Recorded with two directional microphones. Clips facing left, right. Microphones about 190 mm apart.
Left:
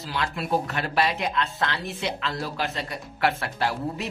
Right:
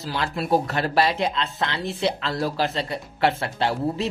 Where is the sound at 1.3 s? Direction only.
20° right (ahead or behind).